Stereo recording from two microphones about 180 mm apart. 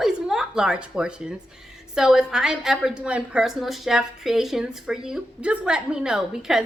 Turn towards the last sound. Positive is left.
turn(degrees=-5)  # may be behind; listen again after turning